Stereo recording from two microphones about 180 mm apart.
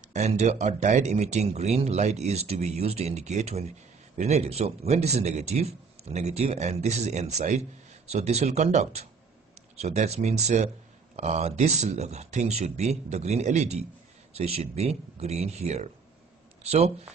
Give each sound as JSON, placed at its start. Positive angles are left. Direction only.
{"t": 0.1, "sound": "speech", "side_deg": -40}